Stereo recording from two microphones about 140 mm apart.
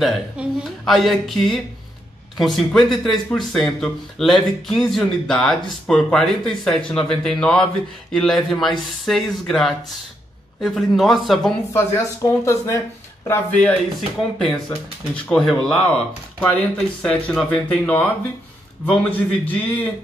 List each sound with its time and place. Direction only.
0.0 s speech: centre (ahead or behind)
11.7 s speech: 20° left (ahead or behind)
13.3 s speech: 10° left (ahead or behind)
15.1 s speech: 5° left (ahead or behind)